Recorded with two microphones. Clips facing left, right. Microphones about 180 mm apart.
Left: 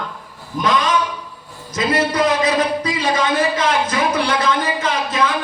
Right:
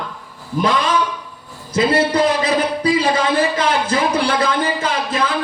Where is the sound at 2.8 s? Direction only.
30° right (ahead or behind).